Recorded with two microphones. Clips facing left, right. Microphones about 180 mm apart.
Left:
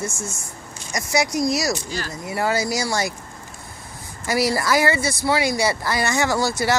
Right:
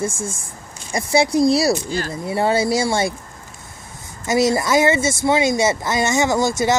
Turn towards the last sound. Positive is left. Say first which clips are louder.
# right 3 dB
turn(degrees=-20)  # may be behind; listen again after turning